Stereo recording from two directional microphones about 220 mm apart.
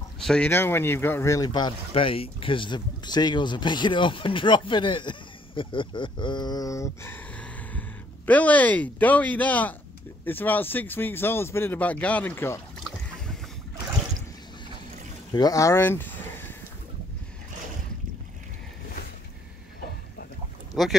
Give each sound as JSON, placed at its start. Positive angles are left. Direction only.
{"t": 0.2, "sound": "speech", "side_deg": 5}
{"t": 15.3, "sound": "speech", "side_deg": 15}
{"t": 20.8, "sound": "speech", "side_deg": 0}